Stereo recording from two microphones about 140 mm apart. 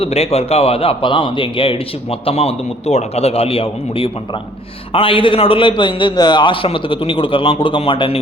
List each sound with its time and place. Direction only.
0.0 s a man's voice: 45° left (ahead or behind)